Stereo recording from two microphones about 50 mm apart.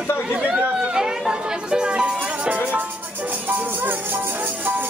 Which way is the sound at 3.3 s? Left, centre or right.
Right.